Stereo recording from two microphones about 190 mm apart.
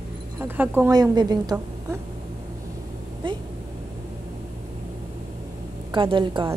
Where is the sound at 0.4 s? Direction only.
10° right (ahead or behind).